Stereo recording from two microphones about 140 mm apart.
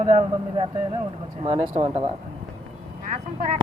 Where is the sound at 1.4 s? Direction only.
45° right (ahead or behind).